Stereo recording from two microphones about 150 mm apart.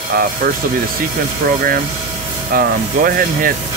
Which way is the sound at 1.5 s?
70° right (ahead or behind).